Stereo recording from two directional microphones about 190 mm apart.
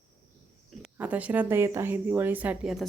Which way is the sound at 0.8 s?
10° right (ahead or behind).